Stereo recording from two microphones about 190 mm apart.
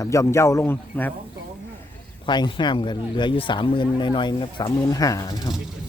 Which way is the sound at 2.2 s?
25° left (ahead or behind).